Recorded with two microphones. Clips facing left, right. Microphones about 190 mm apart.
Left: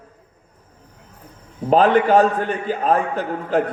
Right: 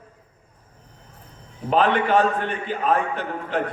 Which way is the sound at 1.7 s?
40° left (ahead or behind).